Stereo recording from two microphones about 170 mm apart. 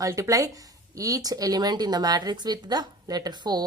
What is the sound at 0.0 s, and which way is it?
Speech, 20° right (ahead or behind).